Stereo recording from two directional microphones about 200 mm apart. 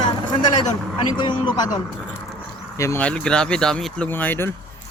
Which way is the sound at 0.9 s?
20° left (ahead or behind).